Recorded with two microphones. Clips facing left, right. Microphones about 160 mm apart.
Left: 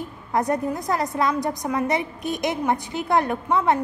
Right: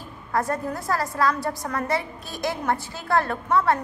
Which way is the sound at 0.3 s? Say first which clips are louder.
Left 3 dB; 20° left (ahead or behind).